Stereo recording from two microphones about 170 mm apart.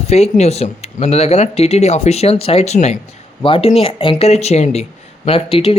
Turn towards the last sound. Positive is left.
turn(degrees=35)  # may be behind; listen again after turning